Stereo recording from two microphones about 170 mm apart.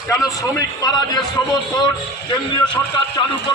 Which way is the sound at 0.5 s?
20° left (ahead or behind).